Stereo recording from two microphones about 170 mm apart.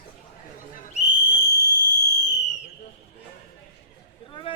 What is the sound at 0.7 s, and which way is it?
Whistle, 40° left (ahead or behind).